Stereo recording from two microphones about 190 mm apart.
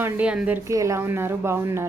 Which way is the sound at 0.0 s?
5° right (ahead or behind).